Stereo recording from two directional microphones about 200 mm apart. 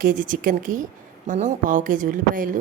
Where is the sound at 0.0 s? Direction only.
40° right (ahead or behind).